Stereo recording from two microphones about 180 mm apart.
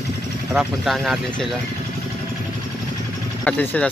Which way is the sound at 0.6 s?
Centre (ahead or behind).